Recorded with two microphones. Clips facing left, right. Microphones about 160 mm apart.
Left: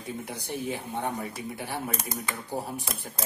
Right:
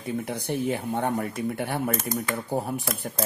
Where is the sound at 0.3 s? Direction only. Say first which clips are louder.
Right 6 dB; 60° right (ahead or behind).